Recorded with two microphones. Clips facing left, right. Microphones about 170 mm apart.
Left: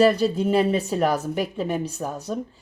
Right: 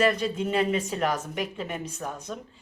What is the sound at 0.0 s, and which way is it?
Speech, 35° left (ahead or behind).